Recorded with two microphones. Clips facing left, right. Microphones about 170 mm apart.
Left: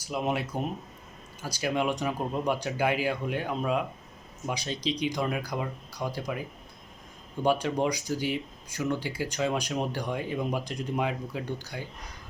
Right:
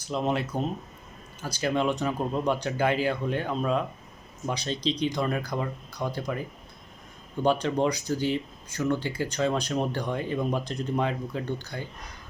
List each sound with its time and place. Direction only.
0.0 s speech: 10° left (ahead or behind)
7.4 s speech: 10° left (ahead or behind)